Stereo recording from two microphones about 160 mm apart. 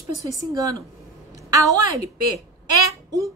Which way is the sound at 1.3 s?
20° right (ahead or behind).